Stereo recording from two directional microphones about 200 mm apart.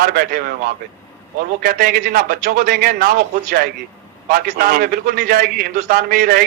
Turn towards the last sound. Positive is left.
turn(degrees=-45)  # may be behind; listen again after turning